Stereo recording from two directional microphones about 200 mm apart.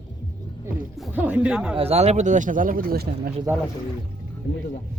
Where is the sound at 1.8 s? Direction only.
30° right (ahead or behind); by 3.3 s 45° right (ahead or behind).